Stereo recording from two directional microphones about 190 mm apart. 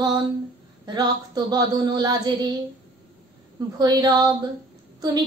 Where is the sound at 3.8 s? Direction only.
20° right (ahead or behind).